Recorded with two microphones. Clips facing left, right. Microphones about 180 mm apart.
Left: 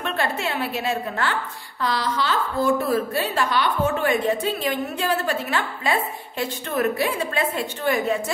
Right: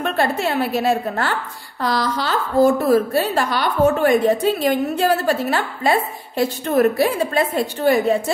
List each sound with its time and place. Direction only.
0.0 s a woman's voice: 40° right (ahead or behind)